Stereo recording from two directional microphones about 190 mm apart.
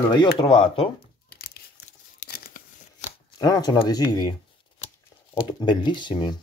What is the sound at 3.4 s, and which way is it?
Speech, 20° left (ahead or behind).